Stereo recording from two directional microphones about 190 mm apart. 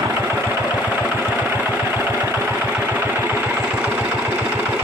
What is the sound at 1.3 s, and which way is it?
Engine, 10° right (ahead or behind).